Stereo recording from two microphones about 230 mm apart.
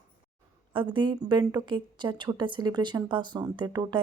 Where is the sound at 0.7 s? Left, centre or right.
Right.